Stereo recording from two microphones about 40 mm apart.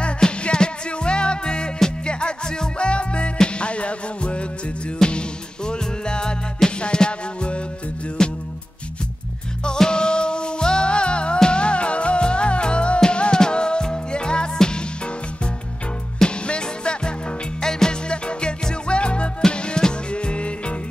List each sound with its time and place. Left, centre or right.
0.0 s music: left
5.0 s music: centre
8.2 s music: centre
9.7 s music: left
16.4 s music: left